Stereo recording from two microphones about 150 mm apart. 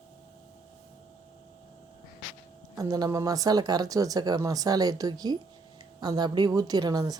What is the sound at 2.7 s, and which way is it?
Speech, 25° right (ahead or behind).